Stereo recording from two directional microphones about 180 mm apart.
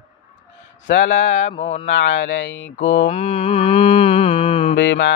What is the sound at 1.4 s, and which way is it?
Mantra, 35° left (ahead or behind).